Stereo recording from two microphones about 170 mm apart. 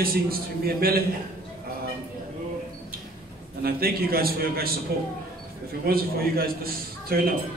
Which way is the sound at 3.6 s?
60° right (ahead or behind).